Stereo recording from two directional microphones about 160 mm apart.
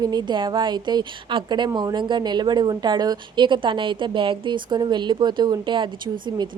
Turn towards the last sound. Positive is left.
turn(degrees=-30)  # may be behind; listen again after turning